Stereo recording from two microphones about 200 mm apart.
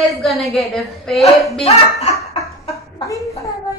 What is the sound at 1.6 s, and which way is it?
Speech, 30° left (ahead or behind).